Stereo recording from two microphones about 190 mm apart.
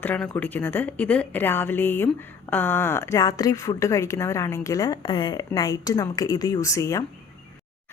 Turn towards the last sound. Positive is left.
turn(degrees=15)  # may be behind; listen again after turning